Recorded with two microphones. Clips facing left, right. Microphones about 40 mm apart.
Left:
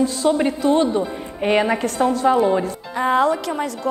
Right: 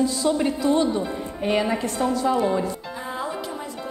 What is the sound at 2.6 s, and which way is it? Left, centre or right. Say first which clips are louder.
Music: left 9 dB; left.